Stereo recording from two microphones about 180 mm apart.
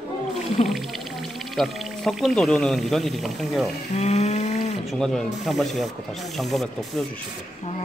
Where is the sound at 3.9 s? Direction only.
35° left (ahead or behind).